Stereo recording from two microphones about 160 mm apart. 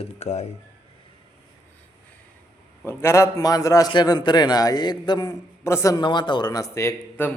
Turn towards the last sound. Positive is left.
turn(degrees=15)  # may be behind; listen again after turning